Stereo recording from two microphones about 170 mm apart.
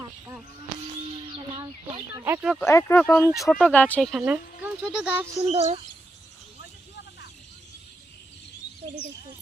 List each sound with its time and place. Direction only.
1.4 s chicken: 25° right (ahead or behind)
2.1 s speech: 15° right (ahead or behind)
2.6 s speech: 15° left (ahead or behind)
3.0 s speech: 5° left (ahead or behind)
3.2 s speech: 20° left (ahead or behind)
3.5 s speech: 5° left (ahead or behind)
4.1 s speech: 5° right (ahead or behind)
5.5 s speech: 35° right (ahead or behind)